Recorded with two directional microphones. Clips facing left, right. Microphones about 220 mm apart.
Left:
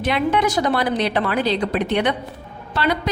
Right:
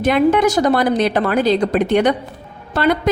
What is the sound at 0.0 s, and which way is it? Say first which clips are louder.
A woman's voice: right 6 dB; 45° right (ahead or behind).